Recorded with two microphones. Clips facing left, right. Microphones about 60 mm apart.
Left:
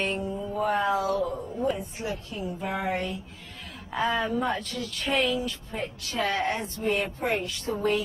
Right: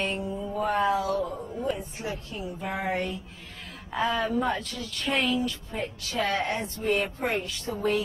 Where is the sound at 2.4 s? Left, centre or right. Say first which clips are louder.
Left 1 dB; centre.